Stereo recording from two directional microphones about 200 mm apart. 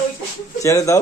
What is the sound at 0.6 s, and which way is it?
Speech, 15° left (ahead or behind).